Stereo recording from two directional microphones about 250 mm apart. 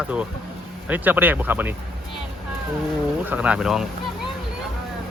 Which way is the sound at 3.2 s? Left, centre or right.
Centre.